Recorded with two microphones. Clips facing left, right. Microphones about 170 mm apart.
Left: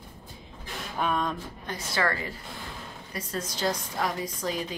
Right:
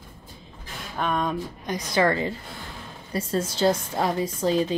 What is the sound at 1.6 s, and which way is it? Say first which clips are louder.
A woman's voice: right 7 dB; 15° right (ahead or behind).